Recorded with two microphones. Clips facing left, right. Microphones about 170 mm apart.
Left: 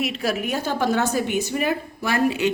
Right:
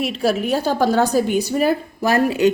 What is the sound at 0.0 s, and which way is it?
A woman's voice, 30° right (ahead or behind).